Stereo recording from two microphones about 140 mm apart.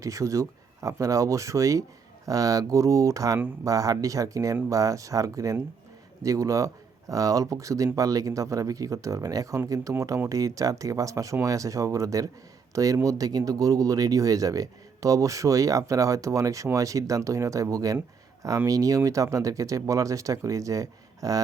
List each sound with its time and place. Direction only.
0.0 s speech: 25° right (ahead or behind)